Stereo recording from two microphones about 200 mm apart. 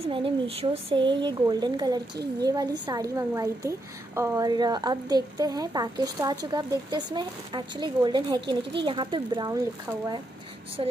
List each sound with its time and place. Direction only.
0.0 s a woman's voice: 30° right (ahead or behind)
10.8 s a woman's voice: 25° right (ahead or behind)